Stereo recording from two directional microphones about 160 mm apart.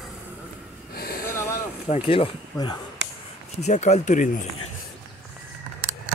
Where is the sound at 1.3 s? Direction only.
15° left (ahead or behind).